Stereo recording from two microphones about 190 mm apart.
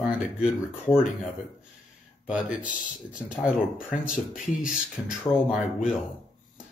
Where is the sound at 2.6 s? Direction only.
45° left (ahead or behind).